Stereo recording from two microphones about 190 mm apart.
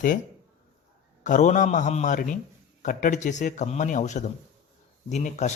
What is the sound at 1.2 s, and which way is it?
Speech, 40° left (ahead or behind).